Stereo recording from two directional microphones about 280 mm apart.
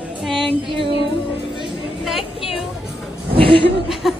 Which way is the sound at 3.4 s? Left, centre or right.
Centre.